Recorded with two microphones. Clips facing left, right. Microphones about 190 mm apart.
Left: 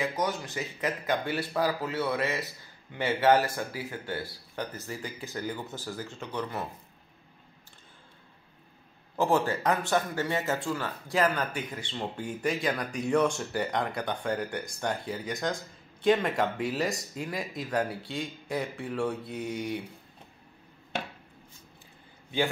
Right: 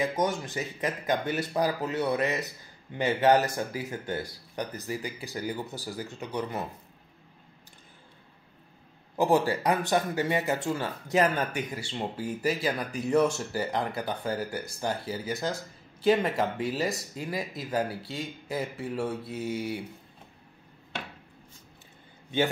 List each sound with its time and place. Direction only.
0.0 s speech: 20° right (ahead or behind)
9.1 s speech: 15° right (ahead or behind)
12.2 s speech: 5° right (ahead or behind)